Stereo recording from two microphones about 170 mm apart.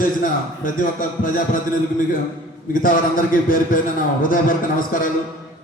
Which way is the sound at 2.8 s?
55° left (ahead or behind).